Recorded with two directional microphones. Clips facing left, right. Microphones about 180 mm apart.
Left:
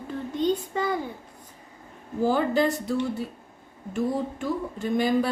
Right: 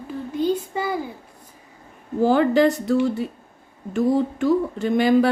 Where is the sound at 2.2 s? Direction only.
75° right (ahead or behind).